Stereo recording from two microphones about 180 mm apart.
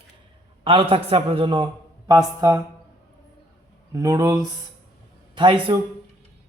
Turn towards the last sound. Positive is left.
turn(degrees=-30)  # may be behind; listen again after turning